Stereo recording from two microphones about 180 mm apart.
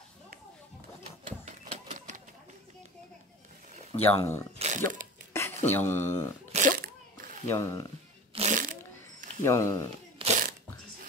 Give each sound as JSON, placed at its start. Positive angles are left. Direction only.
{"t": 1.4, "sound": "typewriter", "side_deg": -40}
{"t": 3.9, "sound": "speech", "side_deg": 15}
{"t": 4.6, "sound": "a sound", "side_deg": -40}
{"t": 5.7, "sound": "speech", "side_deg": 10}
{"t": 6.5, "sound": "a sound", "side_deg": -35}
{"t": 7.4, "sound": "speech", "side_deg": 15}
{"t": 8.4, "sound": "a sound", "side_deg": -45}
{"t": 9.4, "sound": "speech", "side_deg": 15}
{"t": 10.2, "sound": "biting", "side_deg": -30}